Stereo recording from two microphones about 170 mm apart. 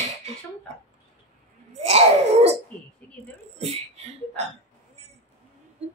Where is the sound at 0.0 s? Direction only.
40° right (ahead or behind).